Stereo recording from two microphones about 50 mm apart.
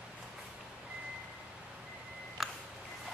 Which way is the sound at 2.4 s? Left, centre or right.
Centre.